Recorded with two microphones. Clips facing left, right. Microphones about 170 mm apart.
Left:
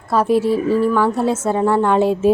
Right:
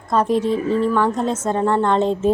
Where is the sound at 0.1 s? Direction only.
5° left (ahead or behind).